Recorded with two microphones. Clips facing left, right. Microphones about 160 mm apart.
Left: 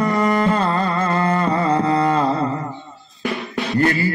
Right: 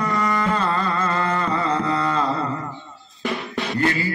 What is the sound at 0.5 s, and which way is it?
Carnatic music, 40° left (ahead or behind).